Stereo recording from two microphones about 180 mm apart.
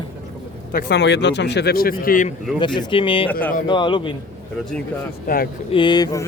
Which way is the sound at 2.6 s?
30° left (ahead or behind).